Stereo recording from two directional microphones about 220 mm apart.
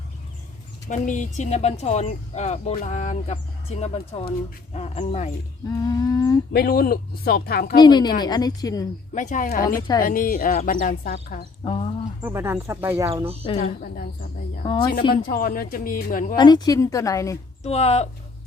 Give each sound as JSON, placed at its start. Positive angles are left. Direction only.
{"t": 0.9, "sound": "speech", "side_deg": 35}
{"t": 5.8, "sound": "a woman's voice", "side_deg": 15}
{"t": 6.5, "sound": "speech", "side_deg": 45}
{"t": 7.8, "sound": "a woman's voice", "side_deg": 20}
{"t": 9.1, "sound": "speech", "side_deg": 35}
{"t": 11.6, "sound": "speech", "side_deg": 25}
{"t": 12.2, "sound": "speech", "side_deg": -10}
{"t": 13.6, "sound": "speech", "side_deg": 40}
{"t": 14.6, "sound": "speech", "side_deg": 20}
{"t": 15.1, "sound": "speech", "side_deg": 40}
{"t": 16.3, "sound": "a woman's voice", "side_deg": 20}
{"t": 17.6, "sound": "speech", "side_deg": 30}